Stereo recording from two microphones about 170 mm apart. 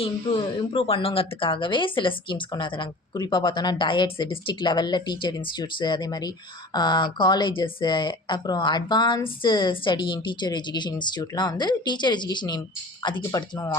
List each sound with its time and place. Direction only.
0.0 s speech: 30° left (ahead or behind)